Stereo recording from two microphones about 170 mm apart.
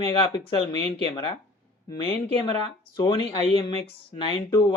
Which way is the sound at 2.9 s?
25° left (ahead or behind).